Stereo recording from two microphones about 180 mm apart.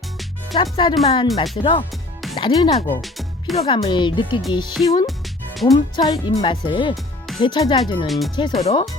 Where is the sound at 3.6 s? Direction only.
25° left (ahead or behind).